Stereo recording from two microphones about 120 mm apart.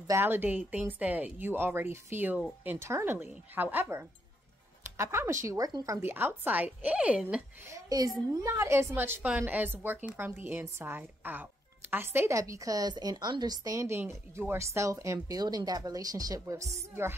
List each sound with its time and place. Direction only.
0.0 s speech: 20° right (ahead or behind)
5.7 s speech: 35° right (ahead or behind)
5.9 s speech: 15° right (ahead or behind)
7.6 s a woman's voice: 30° right (ahead or behind)